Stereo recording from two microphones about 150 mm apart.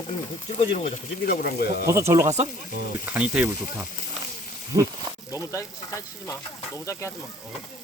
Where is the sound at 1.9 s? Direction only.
20° right (ahead or behind).